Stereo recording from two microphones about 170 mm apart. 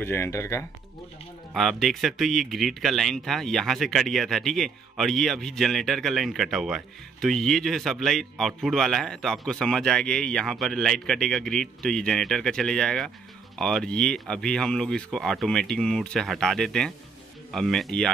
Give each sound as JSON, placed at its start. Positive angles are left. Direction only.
{"t": 0.0, "sound": "speech", "side_deg": 15}
{"t": 1.5, "sound": "speech", "side_deg": 0}